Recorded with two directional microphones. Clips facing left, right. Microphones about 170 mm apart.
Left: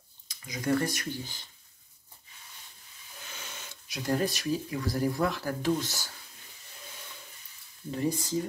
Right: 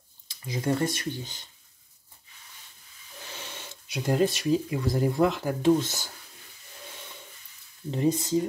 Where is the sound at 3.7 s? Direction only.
20° right (ahead or behind).